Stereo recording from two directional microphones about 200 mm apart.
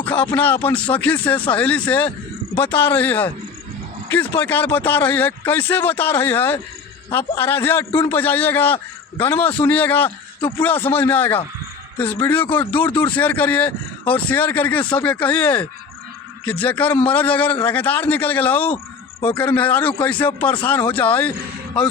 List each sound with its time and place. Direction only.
0.0 s speech: 10° left (ahead or behind)
12.9 s speech: 25° left (ahead or behind)
13.1 s speech: 10° left (ahead or behind)